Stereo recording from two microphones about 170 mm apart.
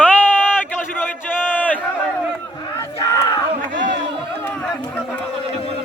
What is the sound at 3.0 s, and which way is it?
Crowd, 20° left (ahead or behind).